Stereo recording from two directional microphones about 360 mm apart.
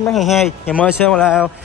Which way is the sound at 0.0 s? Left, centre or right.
Centre.